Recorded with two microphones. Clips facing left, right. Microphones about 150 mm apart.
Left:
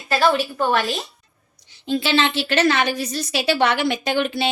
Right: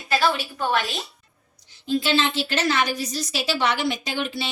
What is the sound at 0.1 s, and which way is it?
Speech, 45° left (ahead or behind).